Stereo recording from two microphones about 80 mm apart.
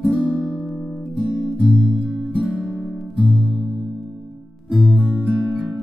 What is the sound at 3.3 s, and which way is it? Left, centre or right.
Music, centre.